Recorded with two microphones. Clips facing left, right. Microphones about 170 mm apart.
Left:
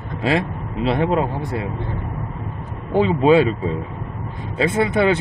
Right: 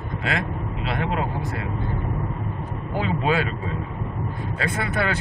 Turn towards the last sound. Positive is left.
turn(degrees=20)  # may be behind; listen again after turning